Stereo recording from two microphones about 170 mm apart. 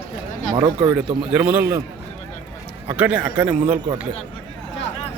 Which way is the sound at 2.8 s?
10° right (ahead or behind).